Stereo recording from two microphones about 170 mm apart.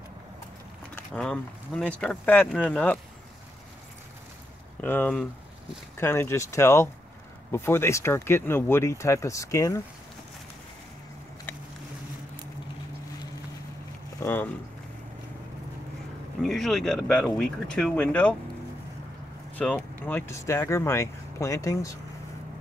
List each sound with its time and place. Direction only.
0.9 s speech: 5° left (ahead or behind)
4.8 s speech: 10° left (ahead or behind)
14.2 s speech: 10° left (ahead or behind)
16.4 s speech: centre (ahead or behind)
19.5 s speech: 10° left (ahead or behind)